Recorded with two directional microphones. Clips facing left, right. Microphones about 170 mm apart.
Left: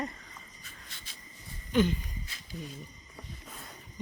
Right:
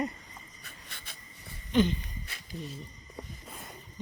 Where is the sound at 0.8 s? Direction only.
60° right (ahead or behind).